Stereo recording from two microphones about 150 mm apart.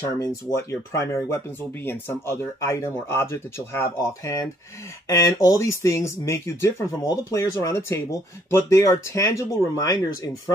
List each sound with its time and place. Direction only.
0.2 s speech: 20° left (ahead or behind)